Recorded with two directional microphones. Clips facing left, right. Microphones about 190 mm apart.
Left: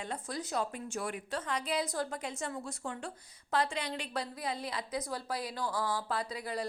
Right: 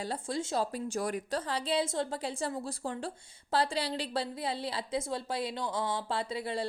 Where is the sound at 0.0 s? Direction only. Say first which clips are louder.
Right 4 dB; 30° right (ahead or behind).